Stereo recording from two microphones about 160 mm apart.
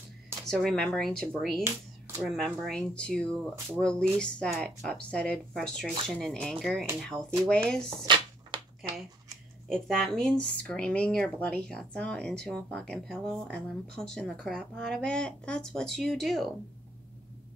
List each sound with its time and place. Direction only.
0.5 s speech: 5° left (ahead or behind)
8.0 s a sound: 30° right (ahead or behind)
9.7 s speech: centre (ahead or behind)